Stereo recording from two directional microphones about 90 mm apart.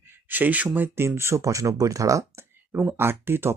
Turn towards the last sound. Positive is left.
turn(degrees=-25)  # may be behind; listen again after turning